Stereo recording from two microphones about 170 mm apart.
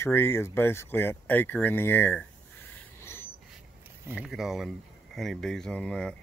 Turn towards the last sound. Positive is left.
turn(degrees=5)  # may be behind; listen again after turning